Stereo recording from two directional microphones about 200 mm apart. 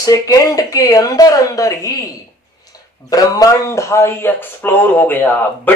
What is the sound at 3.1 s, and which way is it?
Speech, 15° left (ahead or behind).